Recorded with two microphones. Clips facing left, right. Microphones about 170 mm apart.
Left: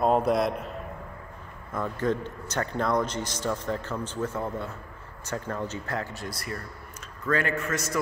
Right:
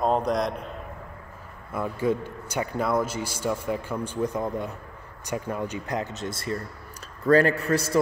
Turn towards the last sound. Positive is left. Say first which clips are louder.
# right 5 dB
turn(degrees=-30)  # may be behind; listen again after turning